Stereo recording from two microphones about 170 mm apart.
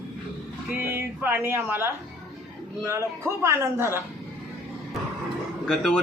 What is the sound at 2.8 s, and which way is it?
A man's voice, 15° right (ahead or behind).